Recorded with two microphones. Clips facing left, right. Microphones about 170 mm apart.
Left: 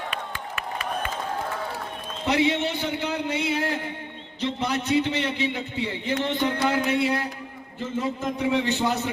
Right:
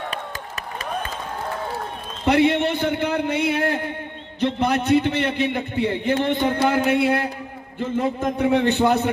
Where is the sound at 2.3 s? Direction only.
55° right (ahead or behind).